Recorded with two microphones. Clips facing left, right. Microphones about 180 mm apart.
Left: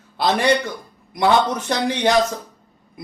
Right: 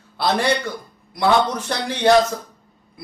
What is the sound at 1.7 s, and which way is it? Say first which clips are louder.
Speech: left 2 dB; 15° left (ahead or behind).